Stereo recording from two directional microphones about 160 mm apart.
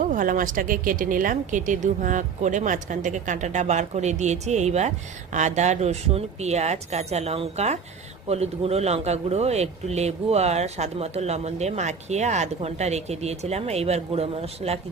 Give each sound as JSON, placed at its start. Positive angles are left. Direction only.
{"t": 0.0, "sound": "speech", "side_deg": -55}